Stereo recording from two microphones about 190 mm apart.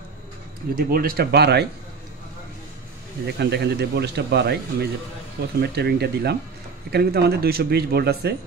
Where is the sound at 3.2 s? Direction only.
60° right (ahead or behind).